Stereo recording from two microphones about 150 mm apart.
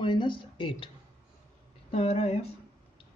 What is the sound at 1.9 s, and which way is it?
Speech, 45° left (ahead or behind).